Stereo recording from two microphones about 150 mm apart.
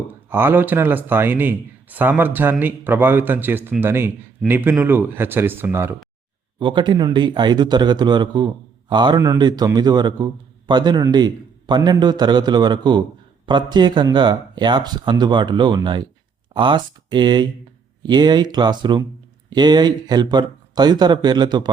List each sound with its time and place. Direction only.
0.3 s speech: 15° right (ahead or behind)
6.6 s a man's voice: 35° right (ahead or behind)
9.1 s a man's voice: 20° right (ahead or behind)